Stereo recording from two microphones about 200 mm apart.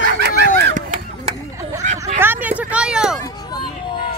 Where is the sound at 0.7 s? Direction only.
40° right (ahead or behind).